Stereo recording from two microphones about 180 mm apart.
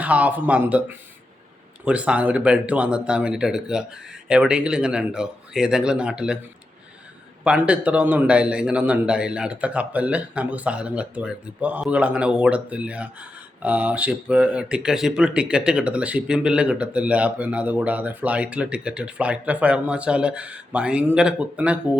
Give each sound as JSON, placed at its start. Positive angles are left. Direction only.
{"t": 0.0, "sound": "a man's voice", "side_deg": -10}
{"t": 7.4, "sound": "speech", "side_deg": -5}